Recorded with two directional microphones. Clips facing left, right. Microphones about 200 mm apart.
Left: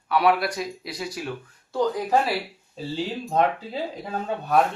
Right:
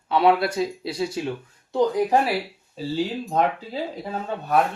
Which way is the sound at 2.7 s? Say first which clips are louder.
Right 3 dB; 5° right (ahead or behind).